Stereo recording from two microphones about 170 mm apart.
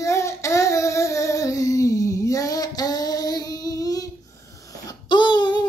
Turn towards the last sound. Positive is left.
turn(degrees=25)  # may be behind; listen again after turning